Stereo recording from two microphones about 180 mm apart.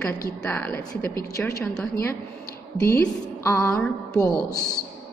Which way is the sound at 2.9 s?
15° left (ahead or behind).